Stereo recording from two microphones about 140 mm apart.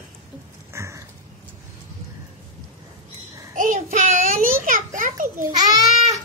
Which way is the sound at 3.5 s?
65° right (ahead or behind).